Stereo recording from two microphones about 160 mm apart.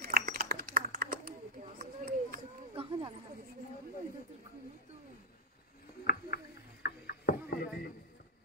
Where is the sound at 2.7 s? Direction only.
30° right (ahead or behind).